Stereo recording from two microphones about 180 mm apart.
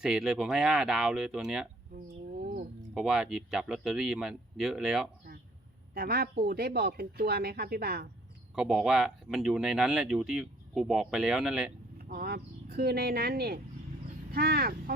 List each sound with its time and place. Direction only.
0.0 s speech: 5° right (ahead or behind)
2.4 s a sound: 55° right (ahead or behind)
2.9 s speech: 5° right (ahead or behind)
5.9 s speech: 55° right (ahead or behind)
8.5 s speech: 5° right (ahead or behind)
11.9 s speech: 55° right (ahead or behind)